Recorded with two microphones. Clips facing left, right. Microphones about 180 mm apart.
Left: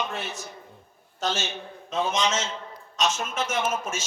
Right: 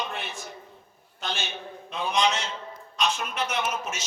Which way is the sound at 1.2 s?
40° left (ahead or behind).